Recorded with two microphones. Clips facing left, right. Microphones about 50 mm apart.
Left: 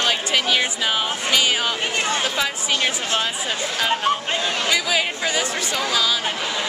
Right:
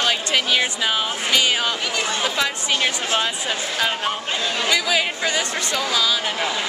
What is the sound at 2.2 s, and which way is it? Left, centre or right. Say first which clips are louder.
Speech: right 1 dB; centre.